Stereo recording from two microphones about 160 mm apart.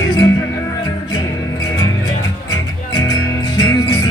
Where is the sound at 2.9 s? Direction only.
25° left (ahead or behind).